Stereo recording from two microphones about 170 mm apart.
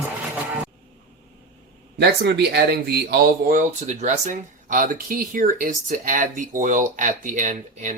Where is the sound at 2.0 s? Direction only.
75° right (ahead or behind).